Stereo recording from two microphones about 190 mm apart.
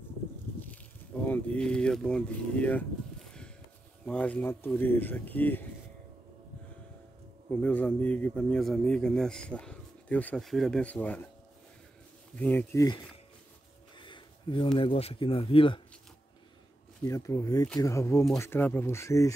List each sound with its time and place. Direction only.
1.2 s speech: 5° left (ahead or behind)
3.3 s a sound: 5° left (ahead or behind)
4.0 s speech: 5° left (ahead or behind)
7.6 s speech: 10° left (ahead or behind)
12.4 s speech: 10° left (ahead or behind)
13.9 s a sound: 25° left (ahead or behind)
14.8 s speech: 30° left (ahead or behind)
17.0 s speech: 15° left (ahead or behind)